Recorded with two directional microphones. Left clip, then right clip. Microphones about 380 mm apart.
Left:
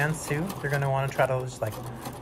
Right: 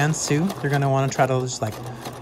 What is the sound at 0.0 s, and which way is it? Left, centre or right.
Speech, centre.